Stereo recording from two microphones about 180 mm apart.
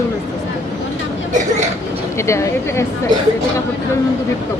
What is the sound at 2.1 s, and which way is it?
Speech, 15° left (ahead or behind).